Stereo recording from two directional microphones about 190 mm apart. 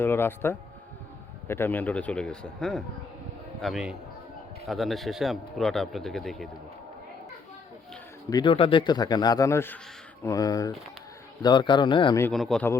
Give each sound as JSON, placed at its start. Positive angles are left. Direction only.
{"t": 0.0, "sound": "a man's voice", "side_deg": 10}
{"t": 8.3, "sound": "speech", "side_deg": 25}
{"t": 12.2, "sound": "speech", "side_deg": 0}